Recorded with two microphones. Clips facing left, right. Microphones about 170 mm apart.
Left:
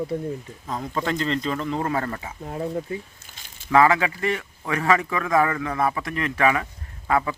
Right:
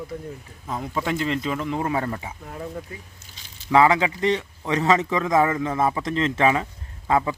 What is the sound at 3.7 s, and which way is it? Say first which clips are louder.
A man's voice: even; 20° right (ahead or behind).